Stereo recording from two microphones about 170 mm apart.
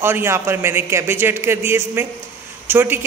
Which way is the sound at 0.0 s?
15° right (ahead or behind).